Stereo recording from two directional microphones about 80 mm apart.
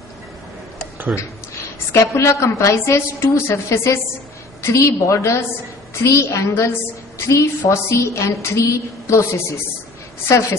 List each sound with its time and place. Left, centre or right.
1.1 s a woman's voice: left